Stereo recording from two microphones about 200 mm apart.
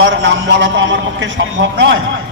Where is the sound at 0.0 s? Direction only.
65° right (ahead or behind).